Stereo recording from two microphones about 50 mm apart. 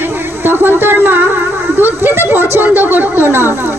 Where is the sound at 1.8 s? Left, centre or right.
Right.